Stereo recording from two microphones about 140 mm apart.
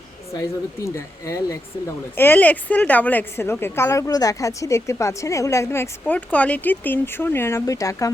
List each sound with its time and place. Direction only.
0.9 s a woman's voice: 20° left (ahead or behind)